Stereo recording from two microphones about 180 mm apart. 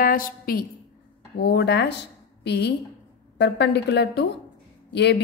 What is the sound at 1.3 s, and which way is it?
A woman's voice, 70° left (ahead or behind).